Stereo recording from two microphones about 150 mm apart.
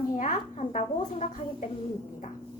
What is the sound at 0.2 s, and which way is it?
A woman's voice, 55° left (ahead or behind).